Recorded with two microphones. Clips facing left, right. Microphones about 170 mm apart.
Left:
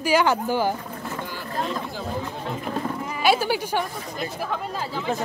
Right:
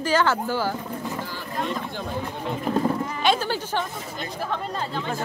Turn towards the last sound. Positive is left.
turn(degrees=5)  # may be behind; listen again after turning